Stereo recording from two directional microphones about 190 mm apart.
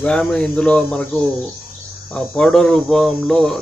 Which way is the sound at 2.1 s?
5° left (ahead or behind).